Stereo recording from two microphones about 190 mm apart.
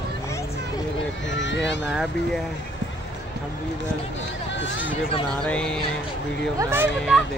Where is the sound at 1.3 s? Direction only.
70° left (ahead or behind).